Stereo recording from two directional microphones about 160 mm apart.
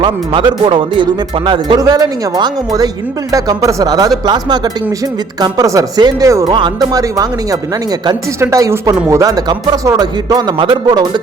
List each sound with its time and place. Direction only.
0.0 s speech: 30° right (ahead or behind)